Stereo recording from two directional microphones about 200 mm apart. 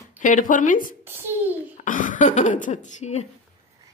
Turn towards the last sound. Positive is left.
turn(degrees=35)  # may be behind; listen again after turning